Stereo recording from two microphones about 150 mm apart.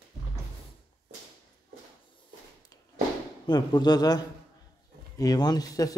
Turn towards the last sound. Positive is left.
turn(degrees=25)  # may be behind; listen again after turning